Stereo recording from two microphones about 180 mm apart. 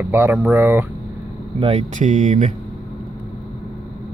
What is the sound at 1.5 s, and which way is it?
Speech, 30° right (ahead or behind).